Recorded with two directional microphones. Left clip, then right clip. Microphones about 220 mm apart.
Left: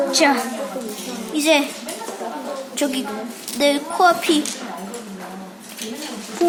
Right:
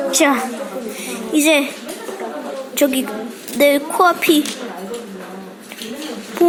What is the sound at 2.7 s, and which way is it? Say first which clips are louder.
A woman's voice: right 7 dB; 15° right (ahead or behind).